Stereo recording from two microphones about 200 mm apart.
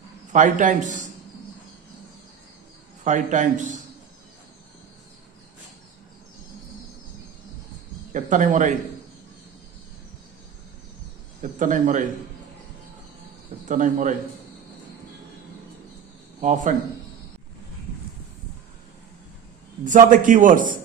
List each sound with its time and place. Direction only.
0.3 s a man's voice: 40° right (ahead or behind)
3.0 s a man's voice: 40° right (ahead or behind)
8.1 s speech: 40° right (ahead or behind)
11.6 s a man's voice: 40° right (ahead or behind)
13.7 s a man's voice: 40° right (ahead or behind)
16.4 s a man's voice: 40° right (ahead or behind)
19.8 s a man's voice: 40° right (ahead or behind)